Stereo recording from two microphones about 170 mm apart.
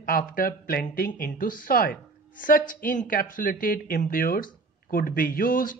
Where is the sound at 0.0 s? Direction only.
60° left (ahead or behind).